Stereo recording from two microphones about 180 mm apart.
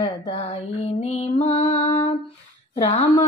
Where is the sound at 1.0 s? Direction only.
35° left (ahead or behind).